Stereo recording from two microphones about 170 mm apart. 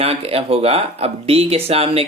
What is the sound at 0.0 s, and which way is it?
Speech, 35° right (ahead or behind).